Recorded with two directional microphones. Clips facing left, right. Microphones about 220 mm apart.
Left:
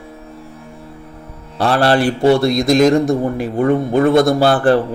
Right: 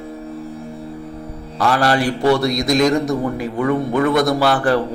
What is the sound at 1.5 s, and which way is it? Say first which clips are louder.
A man's voice: left 3 dB; 30° left (ahead or behind).